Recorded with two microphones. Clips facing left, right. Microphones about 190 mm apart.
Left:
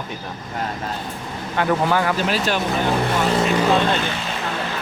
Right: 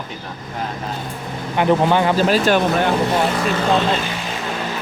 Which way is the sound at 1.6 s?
20° right (ahead or behind).